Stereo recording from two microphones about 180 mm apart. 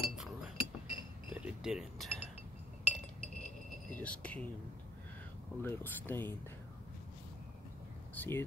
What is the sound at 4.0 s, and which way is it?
Speech, 5° left (ahead or behind).